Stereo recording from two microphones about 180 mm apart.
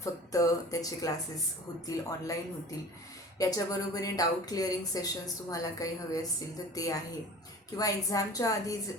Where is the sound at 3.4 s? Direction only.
20° left (ahead or behind).